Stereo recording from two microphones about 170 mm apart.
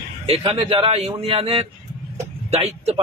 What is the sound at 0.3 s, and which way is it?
A man's voice, 35° right (ahead or behind).